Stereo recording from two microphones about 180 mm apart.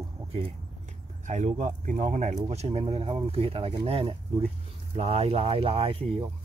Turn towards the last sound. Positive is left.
turn(degrees=-30)  # may be behind; listen again after turning